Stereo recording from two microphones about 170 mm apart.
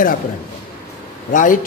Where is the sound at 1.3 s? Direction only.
50° left (ahead or behind).